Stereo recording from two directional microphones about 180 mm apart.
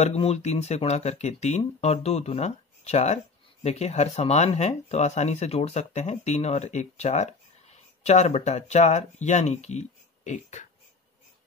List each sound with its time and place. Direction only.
0.0 s speech: 35° left (ahead or behind)